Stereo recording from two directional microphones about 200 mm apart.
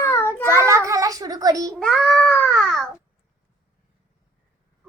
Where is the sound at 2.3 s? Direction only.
Centre (ahead or behind).